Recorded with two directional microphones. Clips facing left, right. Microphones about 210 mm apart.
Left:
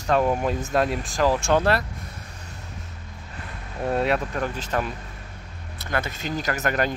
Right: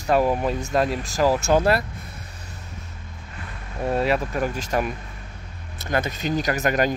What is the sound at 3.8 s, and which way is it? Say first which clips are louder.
Speech: right 1 dB; centre (ahead or behind).